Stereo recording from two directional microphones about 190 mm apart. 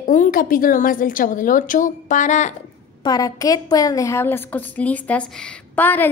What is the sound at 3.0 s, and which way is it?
A woman's voice, 20° left (ahead or behind).